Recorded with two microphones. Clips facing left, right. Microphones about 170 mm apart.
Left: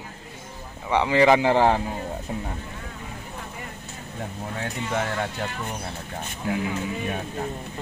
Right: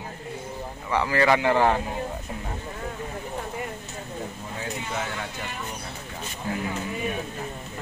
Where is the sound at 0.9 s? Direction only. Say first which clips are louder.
Left 4 dB; 15° left (ahead or behind).